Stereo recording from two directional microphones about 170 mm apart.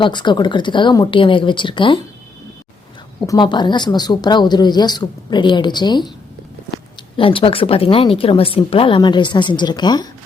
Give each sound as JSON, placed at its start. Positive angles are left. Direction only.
{"t": 0.0, "sound": "speech", "side_deg": 25}
{"t": 3.2, "sound": "speech", "side_deg": 25}
{"t": 7.2, "sound": "a woman's voice", "side_deg": 30}